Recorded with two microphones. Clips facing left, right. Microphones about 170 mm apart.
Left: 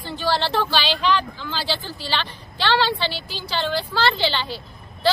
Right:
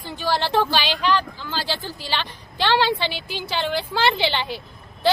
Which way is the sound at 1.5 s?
45° right (ahead or behind).